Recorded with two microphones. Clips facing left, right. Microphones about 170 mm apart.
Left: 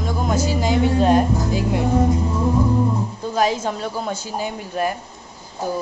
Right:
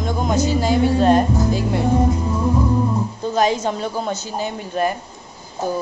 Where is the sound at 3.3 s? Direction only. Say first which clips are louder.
Right 2 dB; 5° left (ahead or behind).